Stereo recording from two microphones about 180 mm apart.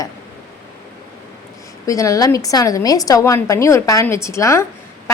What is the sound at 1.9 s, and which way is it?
A woman's voice, 20° left (ahead or behind).